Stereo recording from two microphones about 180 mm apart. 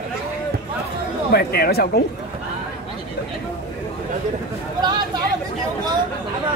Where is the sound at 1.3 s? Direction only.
60° left (ahead or behind).